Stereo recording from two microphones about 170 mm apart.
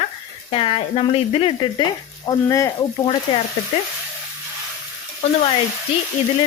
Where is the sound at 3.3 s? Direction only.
30° left (ahead or behind).